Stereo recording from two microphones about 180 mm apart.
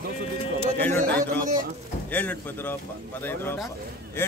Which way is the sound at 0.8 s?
10° left (ahead or behind).